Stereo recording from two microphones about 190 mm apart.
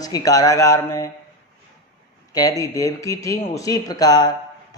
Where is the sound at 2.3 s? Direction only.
20° left (ahead or behind).